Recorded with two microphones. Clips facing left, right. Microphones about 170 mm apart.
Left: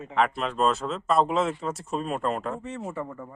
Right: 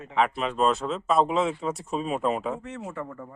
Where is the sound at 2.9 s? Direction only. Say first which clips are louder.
Left 1 dB; 15° left (ahead or behind).